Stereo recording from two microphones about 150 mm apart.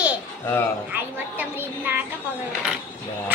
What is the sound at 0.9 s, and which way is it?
A woman's voice, 10° right (ahead or behind).